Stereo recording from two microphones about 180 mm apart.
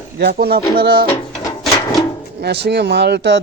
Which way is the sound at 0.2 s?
60° right (ahead or behind).